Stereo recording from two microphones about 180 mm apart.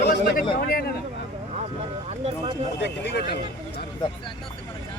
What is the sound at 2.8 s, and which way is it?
Speech, 70° left (ahead or behind).